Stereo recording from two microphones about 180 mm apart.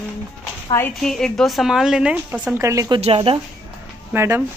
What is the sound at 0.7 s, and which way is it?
Speech, 15° left (ahead or behind).